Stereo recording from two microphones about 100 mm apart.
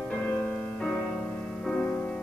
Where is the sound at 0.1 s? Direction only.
15° left (ahead or behind).